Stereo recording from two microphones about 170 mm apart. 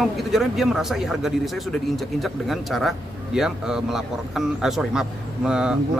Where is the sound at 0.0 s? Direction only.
Centre (ahead or behind).